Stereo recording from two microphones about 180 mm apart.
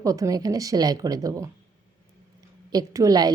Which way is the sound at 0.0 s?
20° right (ahead or behind).